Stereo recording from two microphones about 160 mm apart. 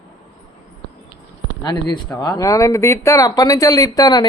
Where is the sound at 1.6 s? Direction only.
25° left (ahead or behind).